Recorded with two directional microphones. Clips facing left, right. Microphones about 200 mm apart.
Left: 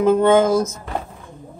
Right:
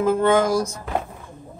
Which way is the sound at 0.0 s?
20° left (ahead or behind).